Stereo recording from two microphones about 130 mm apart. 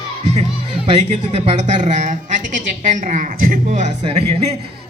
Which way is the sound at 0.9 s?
55° right (ahead or behind).